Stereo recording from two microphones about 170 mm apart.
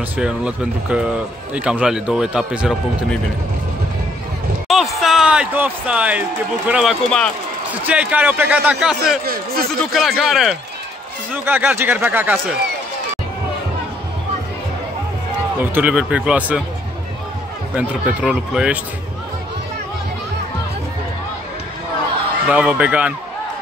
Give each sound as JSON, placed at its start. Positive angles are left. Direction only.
{"t": 0.2, "sound": "speech", "side_deg": -5}
{"t": 4.6, "sound": "speech", "side_deg": 0}
{"t": 9.2, "sound": "speech", "side_deg": -60}
{"t": 9.9, "sound": "speech", "side_deg": 0}
{"t": 11.3, "sound": "speech", "side_deg": -10}
{"t": 15.6, "sound": "speech", "side_deg": -10}
{"t": 17.7, "sound": "speech", "side_deg": -5}
{"t": 22.5, "sound": "speech", "side_deg": -5}